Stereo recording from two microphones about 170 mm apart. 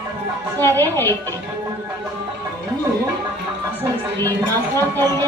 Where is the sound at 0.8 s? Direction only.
15° left (ahead or behind).